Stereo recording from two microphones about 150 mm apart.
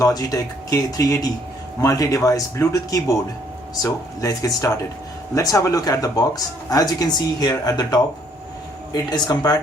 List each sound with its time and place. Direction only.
0.0 s speech: 25° left (ahead or behind)